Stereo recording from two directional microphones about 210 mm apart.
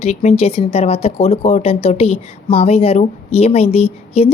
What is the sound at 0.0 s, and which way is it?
Speech, 35° left (ahead or behind).